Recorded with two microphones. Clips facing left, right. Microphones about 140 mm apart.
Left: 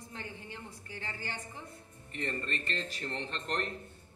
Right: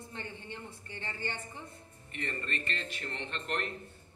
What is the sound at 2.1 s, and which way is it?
Speech, 35° left (ahead or behind).